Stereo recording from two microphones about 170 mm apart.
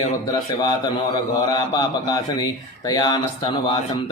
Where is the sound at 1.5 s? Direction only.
25° left (ahead or behind).